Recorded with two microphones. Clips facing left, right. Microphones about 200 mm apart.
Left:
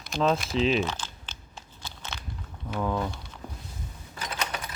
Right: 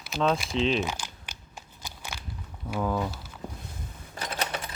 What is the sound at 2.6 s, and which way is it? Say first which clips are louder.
Speech: even; 5° right (ahead or behind).